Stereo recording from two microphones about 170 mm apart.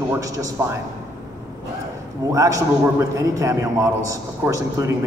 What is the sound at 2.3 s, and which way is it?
A man's voice, 20° right (ahead or behind).